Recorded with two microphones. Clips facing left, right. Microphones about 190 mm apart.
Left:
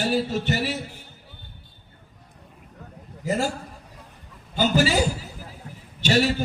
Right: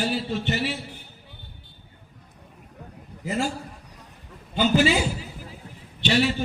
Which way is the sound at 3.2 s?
40° left (ahead or behind).